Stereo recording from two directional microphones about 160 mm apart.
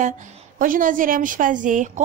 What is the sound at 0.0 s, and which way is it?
A woman's voice, 55° right (ahead or behind).